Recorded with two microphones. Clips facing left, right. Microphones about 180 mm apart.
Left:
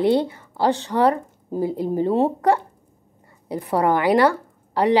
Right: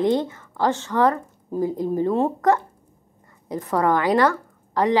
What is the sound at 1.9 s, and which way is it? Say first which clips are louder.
Speech: left 3 dB; 20° left (ahead or behind).